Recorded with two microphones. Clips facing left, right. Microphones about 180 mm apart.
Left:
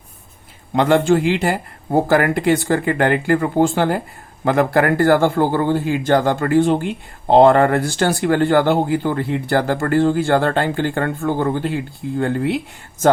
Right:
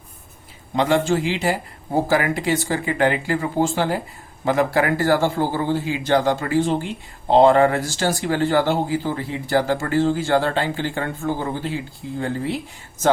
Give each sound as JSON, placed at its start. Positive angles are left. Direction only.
{"t": 0.8, "sound": "speech", "side_deg": 55}